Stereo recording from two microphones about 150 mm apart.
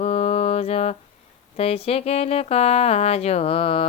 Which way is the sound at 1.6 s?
40° left (ahead or behind).